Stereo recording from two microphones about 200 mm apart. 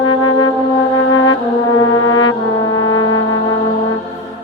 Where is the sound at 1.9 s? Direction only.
20° left (ahead or behind).